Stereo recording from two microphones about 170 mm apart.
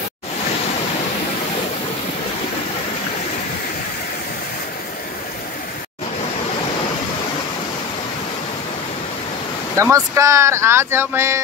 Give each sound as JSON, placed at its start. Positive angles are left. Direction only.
{"t": 9.8, "sound": "speech", "side_deg": -20}